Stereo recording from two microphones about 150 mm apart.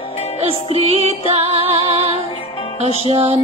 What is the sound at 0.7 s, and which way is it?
Female singing, 40° right (ahead or behind).